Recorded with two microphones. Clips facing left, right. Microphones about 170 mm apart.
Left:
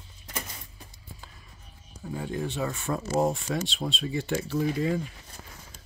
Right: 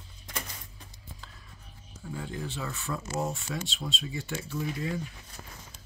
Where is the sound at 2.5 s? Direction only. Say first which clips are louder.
Left 6 dB; 45° left (ahead or behind).